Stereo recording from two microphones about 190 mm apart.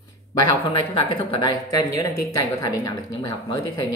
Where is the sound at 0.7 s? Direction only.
25° left (ahead or behind).